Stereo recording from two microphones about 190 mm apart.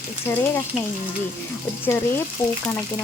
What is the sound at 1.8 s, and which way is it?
Speech, 10° left (ahead or behind).